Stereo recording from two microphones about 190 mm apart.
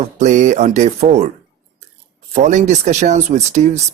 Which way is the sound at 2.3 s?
40° right (ahead or behind).